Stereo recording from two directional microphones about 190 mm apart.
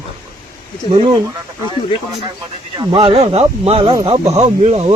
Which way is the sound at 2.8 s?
30° right (ahead or behind).